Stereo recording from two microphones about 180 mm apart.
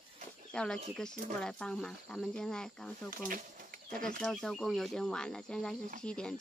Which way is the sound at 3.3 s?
50° right (ahead or behind).